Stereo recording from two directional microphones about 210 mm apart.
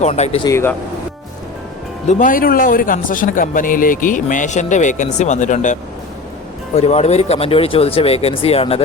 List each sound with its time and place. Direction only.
0.0 s a man's voice: 30° left (ahead or behind)
0.4 s speech: 10° left (ahead or behind)
2.0 s a man's voice: 40° left (ahead or behind)
6.7 s speech: 30° left (ahead or behind)